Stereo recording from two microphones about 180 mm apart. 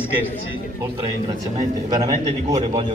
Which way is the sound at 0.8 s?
20° right (ahead or behind).